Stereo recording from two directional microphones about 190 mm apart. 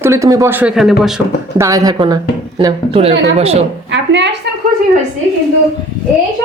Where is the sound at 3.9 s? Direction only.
70° right (ahead or behind).